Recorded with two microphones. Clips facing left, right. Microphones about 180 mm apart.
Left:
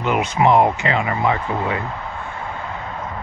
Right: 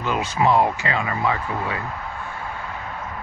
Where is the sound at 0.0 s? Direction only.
20° left (ahead or behind).